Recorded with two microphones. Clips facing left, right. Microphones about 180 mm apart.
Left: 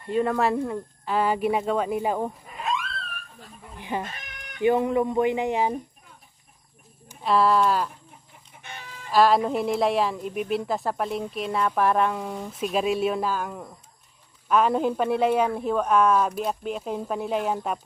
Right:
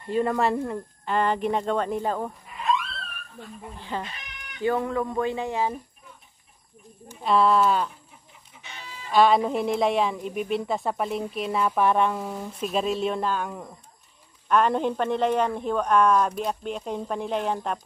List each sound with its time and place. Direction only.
0.0 s a woman's voice: centre (ahead or behind)
3.7 s speech: 15° left (ahead or behind)
7.2 s a woman's voice: centre (ahead or behind)
8.6 s chicken: 55° left (ahead or behind)
9.1 s a woman's voice: centre (ahead or behind)